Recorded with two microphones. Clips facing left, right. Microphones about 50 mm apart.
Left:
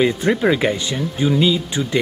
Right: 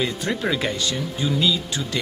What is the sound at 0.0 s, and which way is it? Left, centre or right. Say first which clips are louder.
Speech: left 8 dB; left.